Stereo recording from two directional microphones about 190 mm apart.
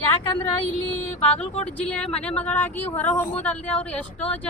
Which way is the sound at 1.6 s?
5° left (ahead or behind).